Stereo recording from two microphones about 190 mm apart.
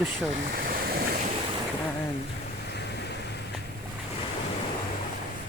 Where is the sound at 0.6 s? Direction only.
50° right (ahead or behind).